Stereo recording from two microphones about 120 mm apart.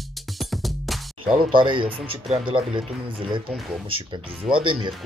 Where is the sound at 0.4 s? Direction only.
Centre (ahead or behind).